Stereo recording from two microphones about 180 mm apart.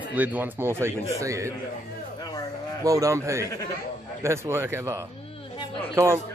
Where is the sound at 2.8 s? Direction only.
20° right (ahead or behind).